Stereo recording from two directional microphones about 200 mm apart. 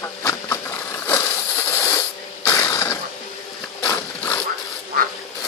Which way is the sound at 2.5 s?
15° left (ahead or behind).